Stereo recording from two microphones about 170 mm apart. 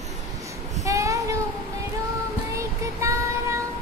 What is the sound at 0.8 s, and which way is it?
Child singing, 20° right (ahead or behind).